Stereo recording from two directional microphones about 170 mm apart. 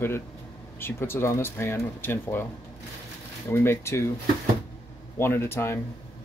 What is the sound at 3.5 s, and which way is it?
Speech, 15° left (ahead or behind).